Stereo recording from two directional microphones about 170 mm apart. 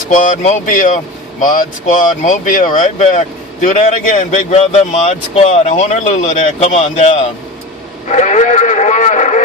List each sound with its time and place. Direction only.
0.1 s speech: 45° left (ahead or behind)